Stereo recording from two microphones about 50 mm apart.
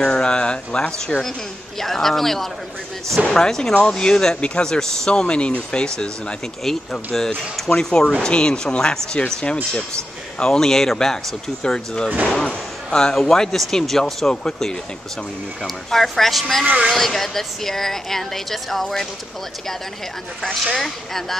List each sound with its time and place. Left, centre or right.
0.0 s speech: centre
6.6 s speech: centre
20.7 s speech: centre